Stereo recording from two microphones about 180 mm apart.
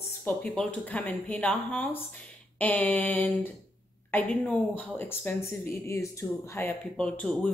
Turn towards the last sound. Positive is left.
turn(degrees=5)  # may be behind; listen again after turning